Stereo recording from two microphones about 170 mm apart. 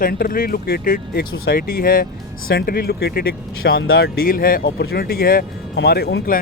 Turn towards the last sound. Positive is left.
turn(degrees=80)